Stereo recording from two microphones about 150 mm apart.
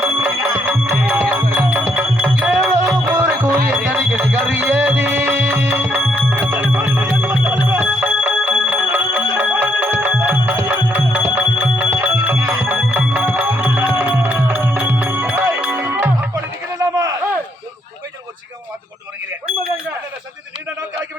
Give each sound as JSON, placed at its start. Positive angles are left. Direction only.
{"t": 0.0, "sound": "music", "side_deg": -10}